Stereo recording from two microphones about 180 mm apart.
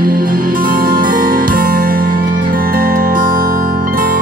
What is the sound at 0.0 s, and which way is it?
Music, 50° right (ahead or behind).